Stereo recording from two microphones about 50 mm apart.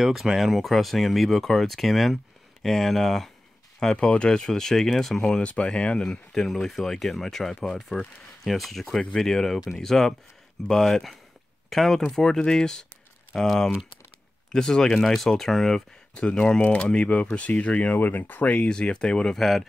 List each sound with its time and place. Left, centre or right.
0.0 s speech: centre
3.8 s speech: centre
4.6 s speech: centre
5.4 s speech: left
6.3 s speech: centre
12.1 s speech: centre
17.9 s speech: left
18.6 s speech: centre
19.3 s speech: centre